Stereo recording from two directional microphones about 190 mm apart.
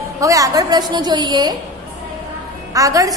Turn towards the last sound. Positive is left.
turn(degrees=-15)  # may be behind; listen again after turning